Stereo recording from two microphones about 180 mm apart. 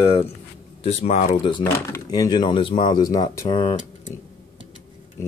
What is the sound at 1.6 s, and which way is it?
Speech, 15° left (ahead or behind).